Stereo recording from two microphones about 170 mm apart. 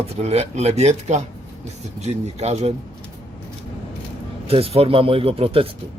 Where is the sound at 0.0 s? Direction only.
35° right (ahead or behind).